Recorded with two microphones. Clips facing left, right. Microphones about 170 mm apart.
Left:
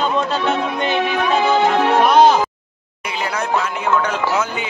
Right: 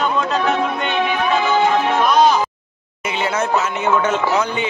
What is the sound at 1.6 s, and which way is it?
Music, 65° left (ahead or behind).